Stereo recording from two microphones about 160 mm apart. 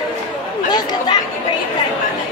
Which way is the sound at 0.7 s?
25° left (ahead or behind).